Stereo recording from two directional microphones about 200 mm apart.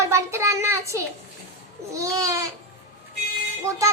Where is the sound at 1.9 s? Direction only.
15° right (ahead or behind).